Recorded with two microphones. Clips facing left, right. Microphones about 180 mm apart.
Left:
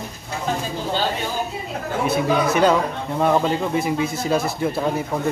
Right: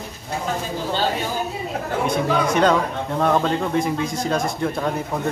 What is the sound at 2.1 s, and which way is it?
Speech, 5° left (ahead or behind).